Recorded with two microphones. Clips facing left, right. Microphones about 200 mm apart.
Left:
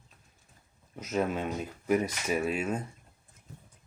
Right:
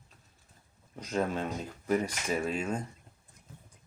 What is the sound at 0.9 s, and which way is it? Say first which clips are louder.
Speech: left 1 dB; 5° left (ahead or behind).